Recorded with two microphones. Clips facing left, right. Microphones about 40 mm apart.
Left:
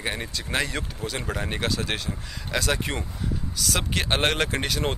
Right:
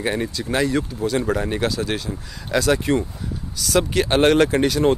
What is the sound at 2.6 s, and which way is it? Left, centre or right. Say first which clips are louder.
Speech: right 10 dB; left.